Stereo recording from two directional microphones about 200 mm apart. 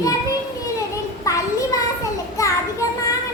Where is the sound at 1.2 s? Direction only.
15° left (ahead or behind).